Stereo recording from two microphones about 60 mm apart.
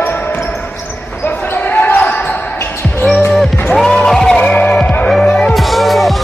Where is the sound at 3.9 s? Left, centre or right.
Centre.